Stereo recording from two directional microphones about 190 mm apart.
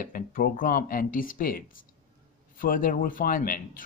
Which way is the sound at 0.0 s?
45° left (ahead or behind).